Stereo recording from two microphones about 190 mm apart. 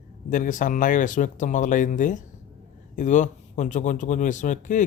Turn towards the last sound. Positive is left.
turn(degrees=40)  # may be behind; listen again after turning